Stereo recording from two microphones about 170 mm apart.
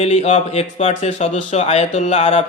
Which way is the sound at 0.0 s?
40° left (ahead or behind).